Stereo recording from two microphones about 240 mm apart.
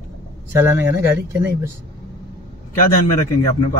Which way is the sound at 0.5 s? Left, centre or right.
Centre.